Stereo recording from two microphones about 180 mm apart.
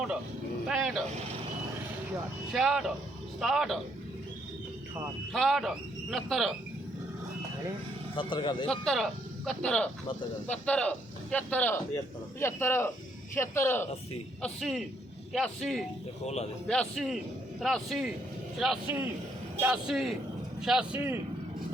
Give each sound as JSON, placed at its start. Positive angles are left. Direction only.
{"t": 0.7, "sound": "speech", "side_deg": -5}
{"t": 2.5, "sound": "speech", "side_deg": 0}
{"t": 5.3, "sound": "speech", "side_deg": 0}
{"t": 8.1, "sound": "a man's voice", "side_deg": 25}
{"t": 8.6, "sound": "speech", "side_deg": 5}
{"t": 14.4, "sound": "speech", "side_deg": 0}
{"t": 16.2, "sound": "speech", "side_deg": 35}
{"t": 16.9, "sound": "a man's voice", "side_deg": 0}